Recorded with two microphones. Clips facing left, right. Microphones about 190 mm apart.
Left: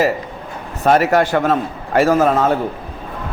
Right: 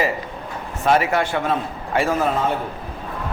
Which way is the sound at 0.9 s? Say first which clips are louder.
Left 5 dB; 40° left (ahead or behind).